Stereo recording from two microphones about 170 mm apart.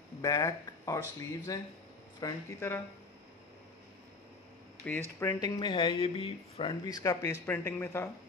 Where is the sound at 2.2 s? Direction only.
15° left (ahead or behind).